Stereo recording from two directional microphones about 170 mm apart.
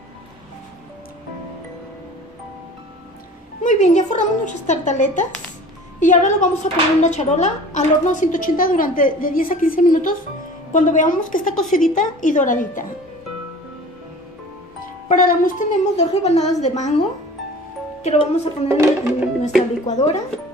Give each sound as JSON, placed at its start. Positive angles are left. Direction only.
{"t": 3.6, "sound": "a woman's voice", "side_deg": 45}
{"t": 15.0, "sound": "a woman's voice", "side_deg": 55}
{"t": 18.0, "sound": "speech", "side_deg": 40}
{"t": 18.7, "sound": "music", "side_deg": -15}
{"t": 19.9, "sound": "a woman's voice", "side_deg": 45}